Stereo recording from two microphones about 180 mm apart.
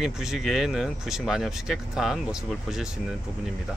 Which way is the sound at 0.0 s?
5° right (ahead or behind).